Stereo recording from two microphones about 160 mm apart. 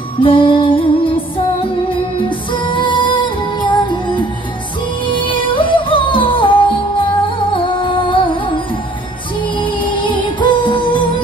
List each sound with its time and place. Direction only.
0.2 s music: 30° left (ahead or behind)
9.6 s music: 30° left (ahead or behind)